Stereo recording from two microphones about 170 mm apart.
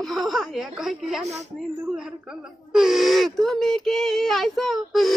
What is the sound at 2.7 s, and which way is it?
Speech, centre (ahead or behind).